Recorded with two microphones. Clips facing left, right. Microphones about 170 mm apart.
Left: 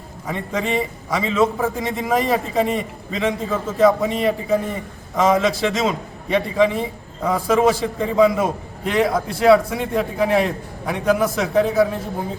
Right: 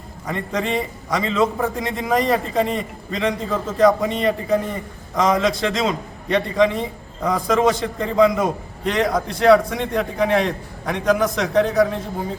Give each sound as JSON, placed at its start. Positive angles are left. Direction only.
{"t": 0.3, "sound": "a man's voice", "side_deg": 5}